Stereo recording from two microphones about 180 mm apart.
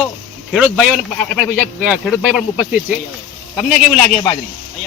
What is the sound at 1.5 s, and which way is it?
Speech, 5° right (ahead or behind).